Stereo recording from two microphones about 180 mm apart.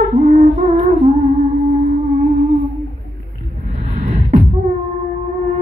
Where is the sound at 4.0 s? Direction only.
40° right (ahead or behind).